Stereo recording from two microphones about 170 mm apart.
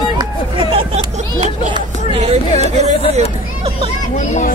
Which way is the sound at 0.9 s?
40° right (ahead or behind).